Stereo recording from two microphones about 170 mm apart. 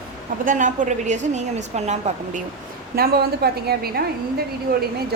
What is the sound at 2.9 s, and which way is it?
A woman's voice, 65° right (ahead or behind).